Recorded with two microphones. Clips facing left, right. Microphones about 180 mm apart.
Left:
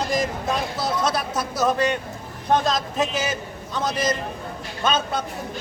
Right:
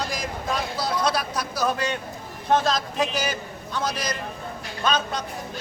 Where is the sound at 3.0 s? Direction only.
25° left (ahead or behind).